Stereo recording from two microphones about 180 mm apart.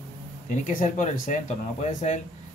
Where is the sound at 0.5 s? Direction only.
45° left (ahead or behind).